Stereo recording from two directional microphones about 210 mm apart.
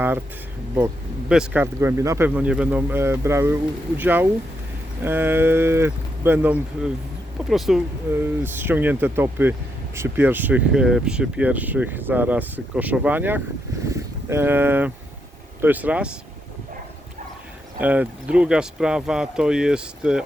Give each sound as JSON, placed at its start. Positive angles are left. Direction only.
{"t": 1.3, "sound": "speech", "side_deg": -5}
{"t": 17.7, "sound": "speech", "side_deg": -5}